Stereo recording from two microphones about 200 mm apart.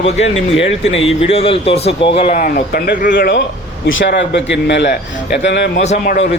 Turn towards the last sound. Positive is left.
turn(degrees=35)  # may be behind; listen again after turning